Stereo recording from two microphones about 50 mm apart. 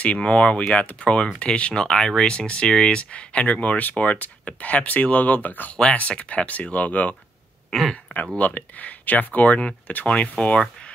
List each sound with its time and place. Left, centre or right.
0.0 s speech: left
5.8 s speech: left